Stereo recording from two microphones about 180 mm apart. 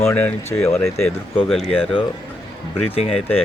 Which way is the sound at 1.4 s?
Centre (ahead or behind).